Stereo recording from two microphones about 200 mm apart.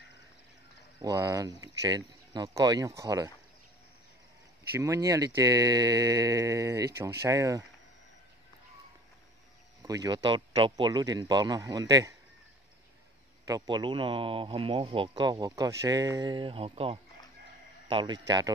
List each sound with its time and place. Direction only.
1.0 s speech: 20° right (ahead or behind)
4.7 s speech: 15° right (ahead or behind)
9.8 s speech: 15° right (ahead or behind)
13.5 s speech: 20° right (ahead or behind)